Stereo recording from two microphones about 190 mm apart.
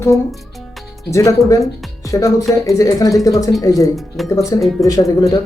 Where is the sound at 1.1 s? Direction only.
15° left (ahead or behind).